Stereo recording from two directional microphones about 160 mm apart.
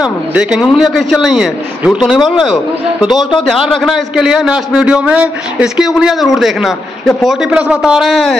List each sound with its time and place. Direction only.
0.0 s a man's voice: 5° right (ahead or behind)